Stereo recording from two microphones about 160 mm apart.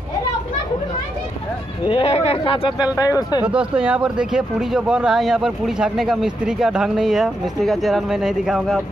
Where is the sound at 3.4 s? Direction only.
5° right (ahead or behind).